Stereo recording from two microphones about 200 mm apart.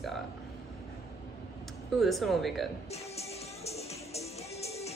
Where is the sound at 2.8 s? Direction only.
30° left (ahead or behind).